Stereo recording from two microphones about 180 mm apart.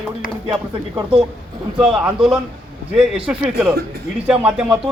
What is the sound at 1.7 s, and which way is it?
Speech, 5° right (ahead or behind).